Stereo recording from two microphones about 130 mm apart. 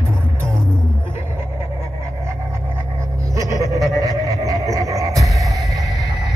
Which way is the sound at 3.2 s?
25° right (ahead or behind).